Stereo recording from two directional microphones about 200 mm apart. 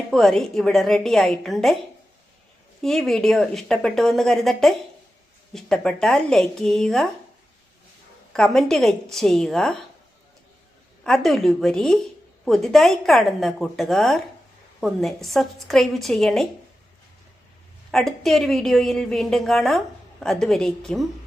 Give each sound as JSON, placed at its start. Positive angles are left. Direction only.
{"t": 0.1, "sound": "a woman's voice", "side_deg": 0}
{"t": 2.8, "sound": "a woman's voice", "side_deg": 0}
{"t": 8.3, "sound": "a woman's voice", "side_deg": 0}
{"t": 11.0, "sound": "a woman's voice", "side_deg": 0}
{"t": 17.9, "sound": "a woman's voice", "side_deg": 0}